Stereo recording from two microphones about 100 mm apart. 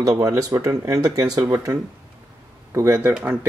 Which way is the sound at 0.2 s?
30° right (ahead or behind).